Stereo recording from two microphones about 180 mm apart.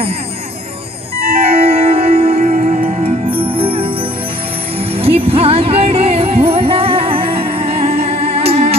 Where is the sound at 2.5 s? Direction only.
50° right (ahead or behind).